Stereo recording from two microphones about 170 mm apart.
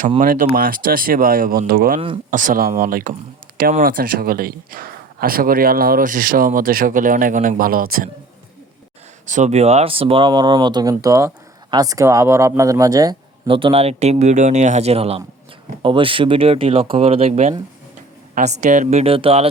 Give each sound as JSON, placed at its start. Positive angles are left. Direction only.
{"t": 0.2, "sound": "speech", "side_deg": -50}
{"t": 9.2, "sound": "speech", "side_deg": -45}